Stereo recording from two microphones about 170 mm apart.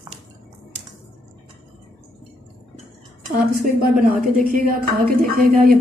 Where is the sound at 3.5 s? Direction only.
55° right (ahead or behind).